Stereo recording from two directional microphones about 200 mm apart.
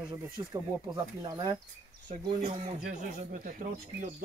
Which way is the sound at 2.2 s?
35° right (ahead or behind).